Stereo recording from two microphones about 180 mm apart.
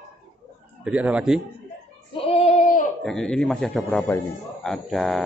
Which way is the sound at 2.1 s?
35° left (ahead or behind).